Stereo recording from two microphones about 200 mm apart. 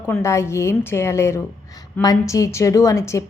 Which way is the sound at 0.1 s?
15° left (ahead or behind).